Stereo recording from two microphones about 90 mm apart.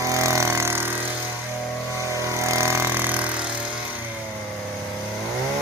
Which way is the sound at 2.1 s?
35° right (ahead or behind).